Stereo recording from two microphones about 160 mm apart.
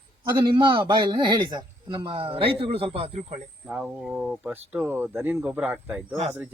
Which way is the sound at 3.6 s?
5° right (ahead or behind).